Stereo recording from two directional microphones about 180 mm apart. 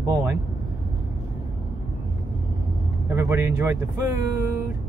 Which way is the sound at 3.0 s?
15° right (ahead or behind).